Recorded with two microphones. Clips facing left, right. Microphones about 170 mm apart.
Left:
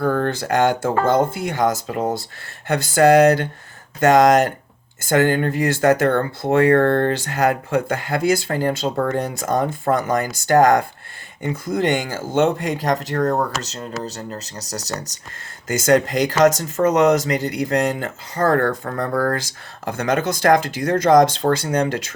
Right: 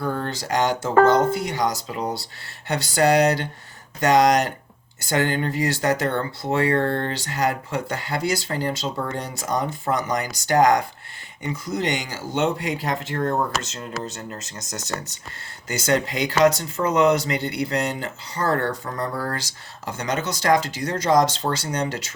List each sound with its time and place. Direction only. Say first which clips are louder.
0.0 s speech: left 7 dB; 50° left (ahead or behind)